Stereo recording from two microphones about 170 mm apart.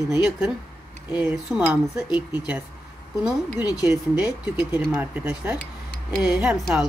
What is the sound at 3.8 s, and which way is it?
Speech, 5° right (ahead or behind).